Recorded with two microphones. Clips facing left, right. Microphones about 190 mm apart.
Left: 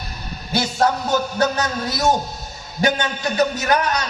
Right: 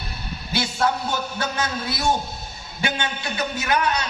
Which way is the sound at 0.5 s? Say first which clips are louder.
Left 4 dB; 40° left (ahead or behind).